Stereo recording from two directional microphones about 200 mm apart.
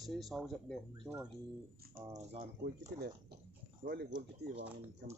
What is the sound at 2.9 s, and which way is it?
Speech, 55° right (ahead or behind).